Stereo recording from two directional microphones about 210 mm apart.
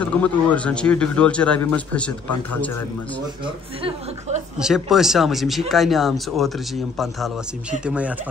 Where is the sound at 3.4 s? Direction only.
25° right (ahead or behind).